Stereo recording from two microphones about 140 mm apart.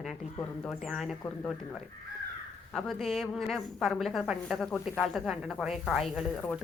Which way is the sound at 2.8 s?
Centre (ahead or behind).